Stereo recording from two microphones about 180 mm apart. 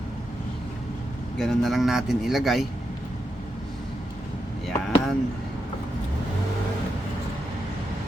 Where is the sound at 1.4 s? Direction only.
Centre (ahead or behind).